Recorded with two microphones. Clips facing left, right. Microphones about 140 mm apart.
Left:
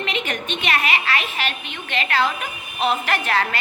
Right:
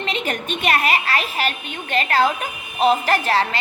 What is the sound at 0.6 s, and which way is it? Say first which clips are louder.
A woman's voice: right 4 dB; 40° right (ahead or behind).